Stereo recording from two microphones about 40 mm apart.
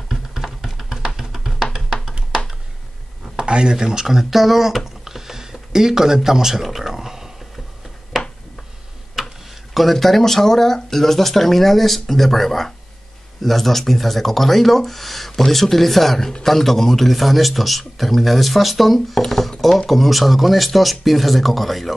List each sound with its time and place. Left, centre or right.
0.3 s music: centre
3.3 s a sound: right
3.7 s speech: centre
9.2 s tick-tock: centre
9.8 s speech: centre